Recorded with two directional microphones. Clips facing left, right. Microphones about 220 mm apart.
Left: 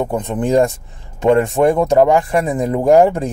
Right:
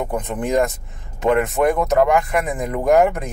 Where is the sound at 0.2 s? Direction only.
30° left (ahead or behind).